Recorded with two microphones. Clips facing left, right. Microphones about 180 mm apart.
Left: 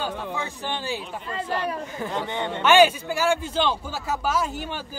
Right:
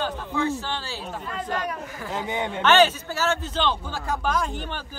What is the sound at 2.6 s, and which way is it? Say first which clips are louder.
Speech: left 2 dB; 10° left (ahead or behind).